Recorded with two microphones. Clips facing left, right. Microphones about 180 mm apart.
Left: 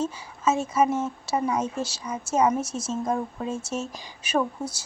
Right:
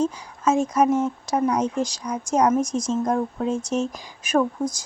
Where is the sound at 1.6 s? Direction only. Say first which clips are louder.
Right 5 dB; 15° right (ahead or behind).